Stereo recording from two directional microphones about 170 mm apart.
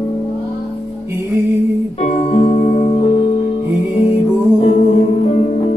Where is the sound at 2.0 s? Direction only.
35° left (ahead or behind).